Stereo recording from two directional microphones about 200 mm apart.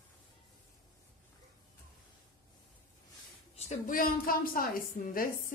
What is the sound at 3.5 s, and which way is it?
A woman's voice, 40° left (ahead or behind).